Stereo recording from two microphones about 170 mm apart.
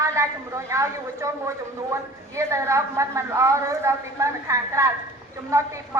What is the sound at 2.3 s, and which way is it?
A woman's voice, 15° right (ahead or behind).